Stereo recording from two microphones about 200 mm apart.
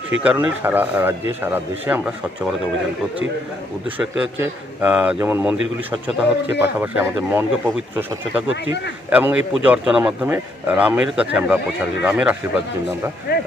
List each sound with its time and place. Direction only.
0.2 s speech: 5° right (ahead or behind)
3.9 s speech: 5° right (ahead or behind)
6.6 s speech: 10° right (ahead or behind)
13.3 s speech: 50° left (ahead or behind)